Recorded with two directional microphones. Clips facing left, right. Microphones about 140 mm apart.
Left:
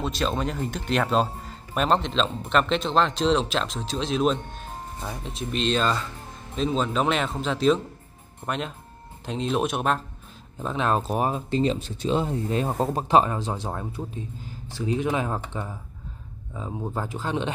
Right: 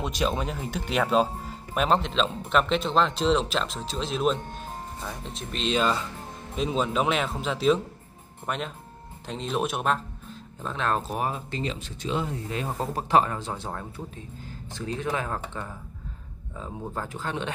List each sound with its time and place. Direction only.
0.0 s speech: 10° right (ahead or behind); by 5.7 s 5° left (ahead or behind)
5.7 s speech: 10° right (ahead or behind)
10.6 s speech: 15° left (ahead or behind)